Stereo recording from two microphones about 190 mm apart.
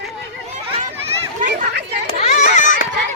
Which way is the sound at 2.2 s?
35° left (ahead or behind).